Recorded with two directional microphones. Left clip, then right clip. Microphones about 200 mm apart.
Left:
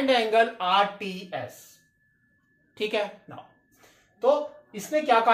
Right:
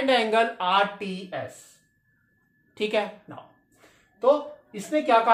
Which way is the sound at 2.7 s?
20° right (ahead or behind).